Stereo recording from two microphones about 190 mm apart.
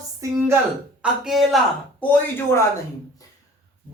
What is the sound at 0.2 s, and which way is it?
Speech, 15° right (ahead or behind).